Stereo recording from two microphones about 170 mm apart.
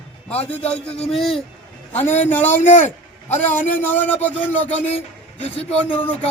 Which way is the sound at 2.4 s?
45° left (ahead or behind).